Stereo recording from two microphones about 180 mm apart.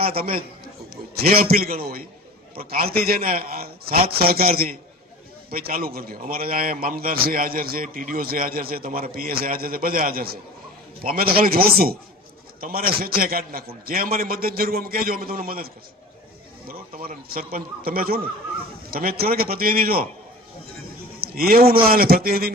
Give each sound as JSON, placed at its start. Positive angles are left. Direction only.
{"t": 0.0, "sound": "a man's voice", "side_deg": -55}
{"t": 21.2, "sound": "a man's voice", "side_deg": -55}